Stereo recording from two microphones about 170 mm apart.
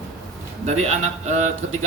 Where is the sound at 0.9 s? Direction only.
45° right (ahead or behind).